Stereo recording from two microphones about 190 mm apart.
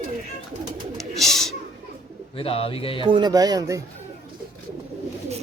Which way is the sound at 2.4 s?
30° left (ahead or behind).